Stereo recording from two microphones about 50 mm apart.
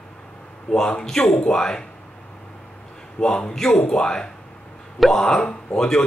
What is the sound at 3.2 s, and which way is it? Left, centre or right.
Speech, centre.